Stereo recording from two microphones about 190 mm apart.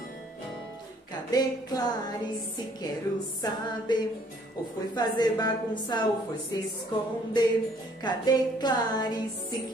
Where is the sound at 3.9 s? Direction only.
20° left (ahead or behind).